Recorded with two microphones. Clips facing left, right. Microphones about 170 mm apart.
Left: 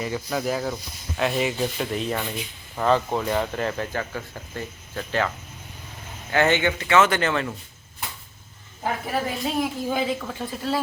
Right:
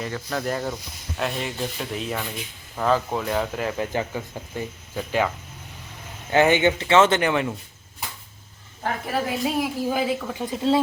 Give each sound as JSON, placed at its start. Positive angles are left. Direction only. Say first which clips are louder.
{"t": 0.0, "sound": "speech", "louder": "left 1 dB", "side_deg": 5}
{"t": 6.3, "sound": "speech", "louder": "right 3 dB", "side_deg": -15}
{"t": 7.2, "sound": "speech", "louder": "right 2 dB", "side_deg": -15}
{"t": 8.8, "sound": "speech", "louder": "even", "side_deg": 0}
{"t": 10.4, "sound": "speech", "louder": "right 7 dB", "side_deg": -20}